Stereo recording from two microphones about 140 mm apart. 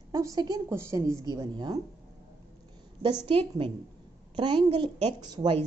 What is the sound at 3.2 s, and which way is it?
A woman's voice, 40° right (ahead or behind).